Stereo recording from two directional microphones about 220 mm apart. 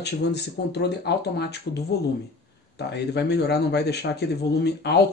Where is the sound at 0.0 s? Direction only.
50° left (ahead or behind).